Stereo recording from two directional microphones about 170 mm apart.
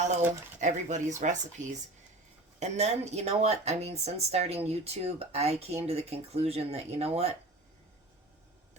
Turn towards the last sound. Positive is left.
turn(degrees=-35)  # may be behind; listen again after turning